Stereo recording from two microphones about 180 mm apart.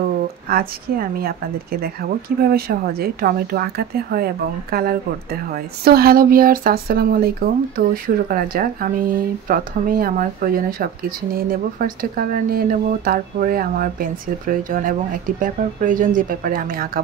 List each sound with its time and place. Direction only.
0.5 s a woman's voice: 55° right (ahead or behind)